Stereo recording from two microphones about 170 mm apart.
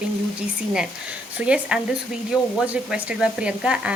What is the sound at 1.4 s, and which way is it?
Speech, 5° right (ahead or behind).